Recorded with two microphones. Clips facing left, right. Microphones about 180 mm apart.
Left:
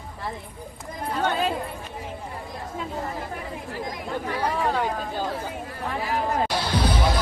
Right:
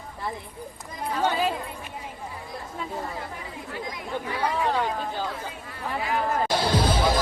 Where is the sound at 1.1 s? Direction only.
10° right (ahead or behind).